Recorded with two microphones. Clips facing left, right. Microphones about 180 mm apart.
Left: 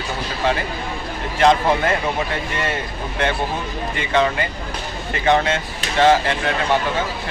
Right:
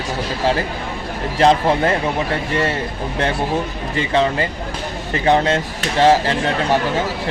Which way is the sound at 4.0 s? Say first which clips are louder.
Right 2 dB; 30° right (ahead or behind).